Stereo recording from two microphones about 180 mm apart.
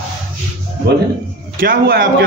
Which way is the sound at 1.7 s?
65° right (ahead or behind).